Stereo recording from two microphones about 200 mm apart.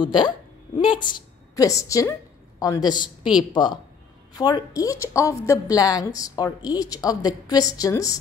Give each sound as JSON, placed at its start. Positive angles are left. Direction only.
{"t": 0.0, "sound": "a woman's voice", "side_deg": 25}